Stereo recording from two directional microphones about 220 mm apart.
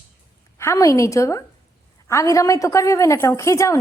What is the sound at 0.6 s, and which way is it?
A woman's voice, 15° left (ahead or behind).